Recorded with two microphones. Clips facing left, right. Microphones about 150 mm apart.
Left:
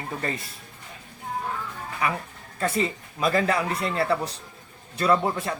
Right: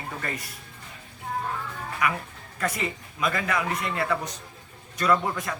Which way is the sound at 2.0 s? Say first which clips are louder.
Even; 30° left (ahead or behind).